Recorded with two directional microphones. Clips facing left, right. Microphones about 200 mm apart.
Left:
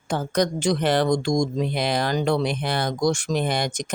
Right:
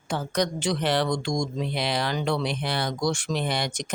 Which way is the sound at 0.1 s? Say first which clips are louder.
Left 4 dB; 45° left (ahead or behind).